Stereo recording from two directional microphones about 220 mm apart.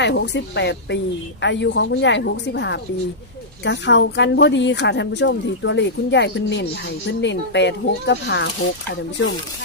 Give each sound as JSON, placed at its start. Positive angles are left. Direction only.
{"t": 0.0, "sound": "speech", "side_deg": 55}